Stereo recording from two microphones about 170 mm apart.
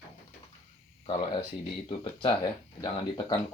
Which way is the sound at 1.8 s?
30° left (ahead or behind).